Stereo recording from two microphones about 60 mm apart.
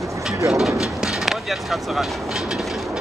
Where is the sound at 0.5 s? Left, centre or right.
Centre.